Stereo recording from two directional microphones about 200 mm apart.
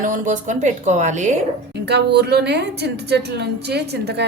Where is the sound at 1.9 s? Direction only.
55° right (ahead or behind).